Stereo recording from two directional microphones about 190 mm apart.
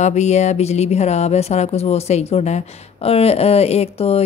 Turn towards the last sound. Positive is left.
turn(degrees=30)  # may be behind; listen again after turning